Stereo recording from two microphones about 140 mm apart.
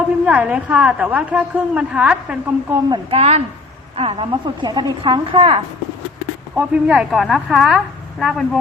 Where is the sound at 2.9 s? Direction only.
45° right (ahead or behind).